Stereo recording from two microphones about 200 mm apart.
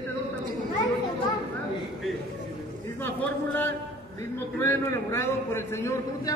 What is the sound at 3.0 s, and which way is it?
A man's voice, 10° left (ahead or behind).